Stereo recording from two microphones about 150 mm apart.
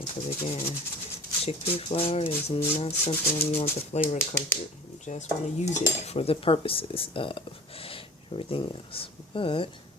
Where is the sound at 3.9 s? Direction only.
50° left (ahead or behind).